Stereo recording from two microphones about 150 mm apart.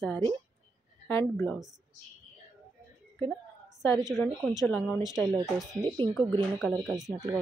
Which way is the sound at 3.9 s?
25° right (ahead or behind).